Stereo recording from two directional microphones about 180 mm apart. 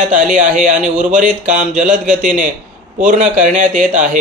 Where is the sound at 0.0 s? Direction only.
45° right (ahead or behind).